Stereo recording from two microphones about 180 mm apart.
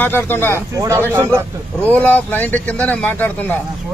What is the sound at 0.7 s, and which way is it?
Speech, 15° right (ahead or behind).